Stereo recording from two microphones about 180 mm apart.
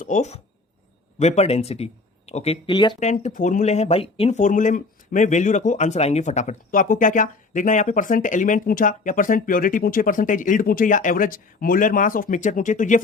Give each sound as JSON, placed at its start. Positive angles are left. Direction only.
{"t": 0.0, "sound": "speech", "side_deg": 40}
{"t": 3.0, "sound": "speech", "side_deg": 40}